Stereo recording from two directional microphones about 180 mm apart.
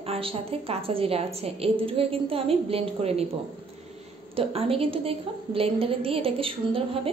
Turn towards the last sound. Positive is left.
turn(degrees=-30)  # may be behind; listen again after turning